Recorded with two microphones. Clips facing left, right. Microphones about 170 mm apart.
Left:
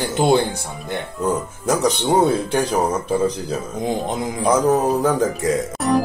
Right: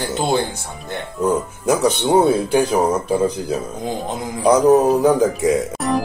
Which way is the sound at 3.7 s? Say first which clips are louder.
Left 2 dB; 15° left (ahead or behind).